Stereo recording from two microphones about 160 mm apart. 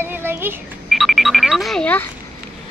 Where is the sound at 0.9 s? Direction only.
Centre (ahead or behind).